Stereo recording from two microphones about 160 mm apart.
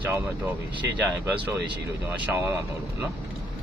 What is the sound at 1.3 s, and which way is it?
Speech, 10° right (ahead or behind).